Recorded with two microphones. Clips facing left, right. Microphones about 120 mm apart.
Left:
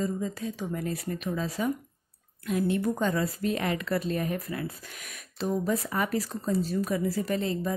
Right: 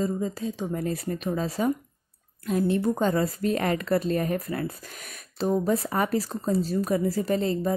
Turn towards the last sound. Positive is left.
turn(degrees=-35)  # may be behind; listen again after turning